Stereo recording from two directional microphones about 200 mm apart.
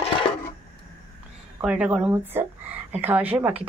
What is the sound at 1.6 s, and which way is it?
Speech, 5° right (ahead or behind).